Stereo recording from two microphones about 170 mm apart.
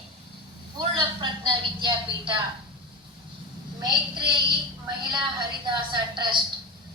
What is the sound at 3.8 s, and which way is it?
Speech, 25° right (ahead or behind).